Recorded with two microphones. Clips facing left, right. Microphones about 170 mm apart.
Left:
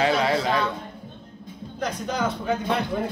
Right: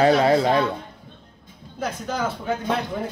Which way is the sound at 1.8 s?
5° right (ahead or behind).